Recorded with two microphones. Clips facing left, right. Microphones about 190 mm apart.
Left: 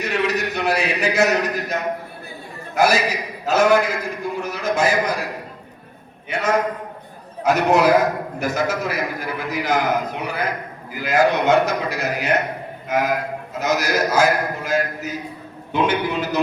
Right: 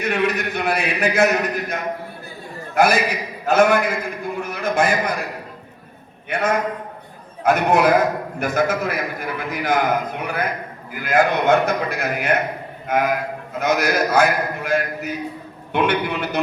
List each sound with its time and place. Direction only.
0.0 s a man's voice: 55° right (ahead or behind)
6.2 s a man's voice: 55° right (ahead or behind)